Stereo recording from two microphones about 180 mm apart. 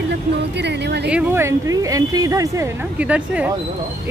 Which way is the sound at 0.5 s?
70° right (ahead or behind).